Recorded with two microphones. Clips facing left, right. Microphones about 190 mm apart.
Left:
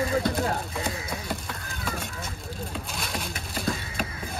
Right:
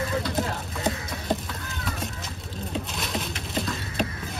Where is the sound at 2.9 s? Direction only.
Centre (ahead or behind).